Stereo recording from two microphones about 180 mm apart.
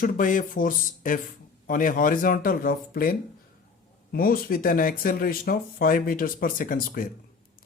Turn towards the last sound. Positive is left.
turn(degrees=50)  # may be behind; listen again after turning